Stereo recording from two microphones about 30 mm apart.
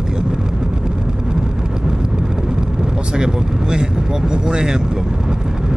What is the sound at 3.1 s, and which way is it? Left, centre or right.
Speech, right.